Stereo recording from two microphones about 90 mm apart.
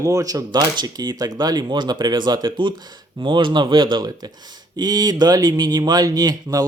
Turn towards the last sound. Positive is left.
turn(degrees=-45)  # may be behind; listen again after turning